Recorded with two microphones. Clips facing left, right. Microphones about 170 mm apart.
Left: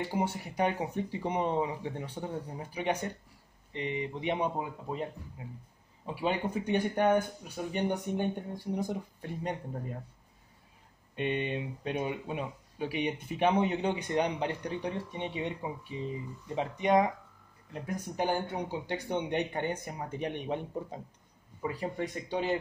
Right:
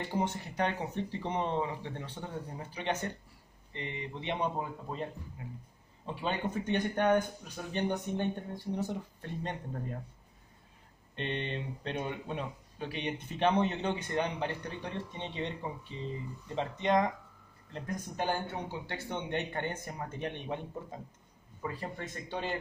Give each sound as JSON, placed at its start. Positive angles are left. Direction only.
{"t": 0.0, "sound": "speech", "side_deg": 10}
{"t": 6.0, "sound": "speech", "side_deg": 10}
{"t": 11.1, "sound": "speech", "side_deg": 10}